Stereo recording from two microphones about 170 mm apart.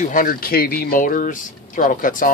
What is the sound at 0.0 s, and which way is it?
Speech, 55° left (ahead or behind).